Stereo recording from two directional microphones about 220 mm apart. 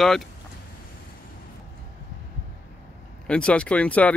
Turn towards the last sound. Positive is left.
turn(degrees=5)  # may be behind; listen again after turning